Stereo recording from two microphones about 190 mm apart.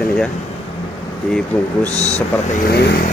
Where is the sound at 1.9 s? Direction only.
35° left (ahead or behind).